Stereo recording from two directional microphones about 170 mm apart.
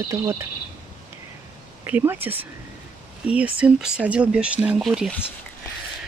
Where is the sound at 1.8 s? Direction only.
10° right (ahead or behind).